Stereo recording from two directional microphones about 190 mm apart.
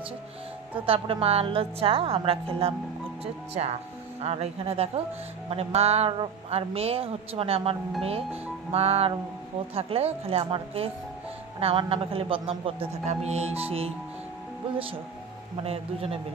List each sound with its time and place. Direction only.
0.7 s a woman's voice: 30° right (ahead or behind)
4.2 s a woman's voice: 35° right (ahead or behind)
15.6 s a woman's voice: 30° right (ahead or behind)